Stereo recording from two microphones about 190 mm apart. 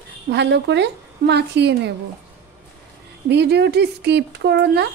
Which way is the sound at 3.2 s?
60° right (ahead or behind).